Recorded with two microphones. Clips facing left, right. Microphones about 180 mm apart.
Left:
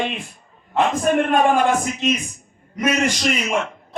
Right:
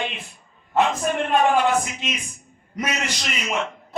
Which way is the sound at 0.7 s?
50° left (ahead or behind).